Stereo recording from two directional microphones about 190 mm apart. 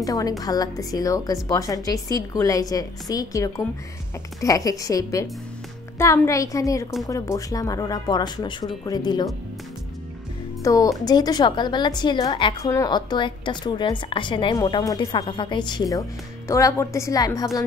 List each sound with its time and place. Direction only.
0.0 s a woman's voice: 20° left (ahead or behind)
10.6 s a woman's voice: 15° left (ahead or behind)